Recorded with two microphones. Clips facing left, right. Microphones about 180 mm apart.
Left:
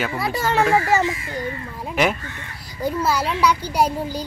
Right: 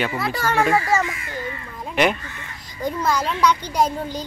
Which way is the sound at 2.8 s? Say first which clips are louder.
Left 1 dB; 5° left (ahead or behind).